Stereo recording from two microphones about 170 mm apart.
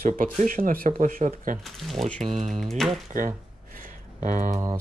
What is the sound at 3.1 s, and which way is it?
Speech, 50° right (ahead or behind).